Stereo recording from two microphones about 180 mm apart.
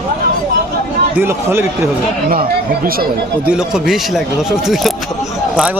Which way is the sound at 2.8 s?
55° right (ahead or behind).